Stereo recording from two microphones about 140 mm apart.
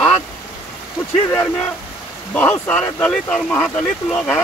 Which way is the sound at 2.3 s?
15° left (ahead or behind).